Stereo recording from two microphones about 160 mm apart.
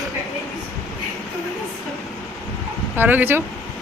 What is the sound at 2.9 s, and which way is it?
Speech, 10° right (ahead or behind).